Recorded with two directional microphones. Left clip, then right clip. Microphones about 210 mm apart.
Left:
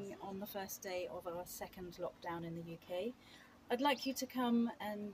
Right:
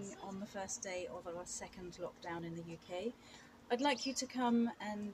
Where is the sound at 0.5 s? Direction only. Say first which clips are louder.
Right 2 dB; 35° left (ahead or behind).